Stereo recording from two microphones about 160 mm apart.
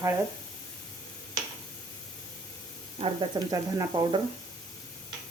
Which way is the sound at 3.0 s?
25° right (ahead or behind).